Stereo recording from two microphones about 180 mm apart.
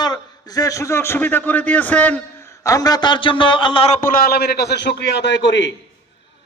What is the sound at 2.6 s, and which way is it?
A man's voice, 20° left (ahead or behind).